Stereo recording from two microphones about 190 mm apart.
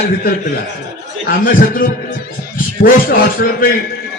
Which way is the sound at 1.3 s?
50° left (ahead or behind).